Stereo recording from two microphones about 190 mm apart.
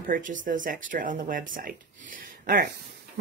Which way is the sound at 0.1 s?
45° right (ahead or behind).